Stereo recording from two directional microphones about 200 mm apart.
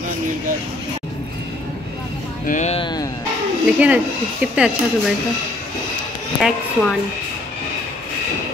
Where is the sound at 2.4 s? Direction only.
35° left (ahead or behind).